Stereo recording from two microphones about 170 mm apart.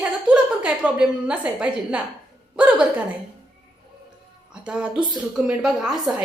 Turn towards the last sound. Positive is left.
turn(degrees=-5)  # may be behind; listen again after turning